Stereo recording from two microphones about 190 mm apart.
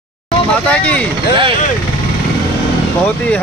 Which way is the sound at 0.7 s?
5° left (ahead or behind).